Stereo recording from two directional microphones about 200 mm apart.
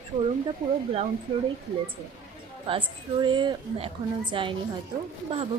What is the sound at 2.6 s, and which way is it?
Speech, 25° right (ahead or behind).